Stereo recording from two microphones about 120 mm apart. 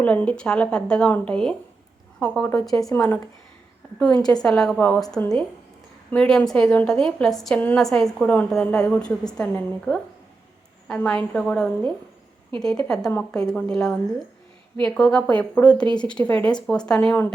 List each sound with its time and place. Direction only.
0.0 s a woman's voice: 10° left (ahead or behind)
2.9 s speech: 20° left (ahead or behind)
3.9 s a woman's voice: 5° left (ahead or behind)